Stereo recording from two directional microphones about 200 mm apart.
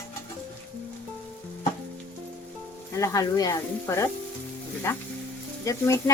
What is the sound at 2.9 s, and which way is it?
Speech, 15° left (ahead or behind).